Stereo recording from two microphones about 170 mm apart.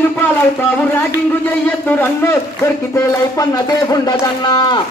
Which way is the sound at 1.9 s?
15° left (ahead or behind).